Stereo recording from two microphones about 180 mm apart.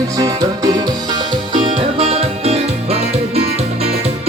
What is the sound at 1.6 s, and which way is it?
Music, 35° right (ahead or behind).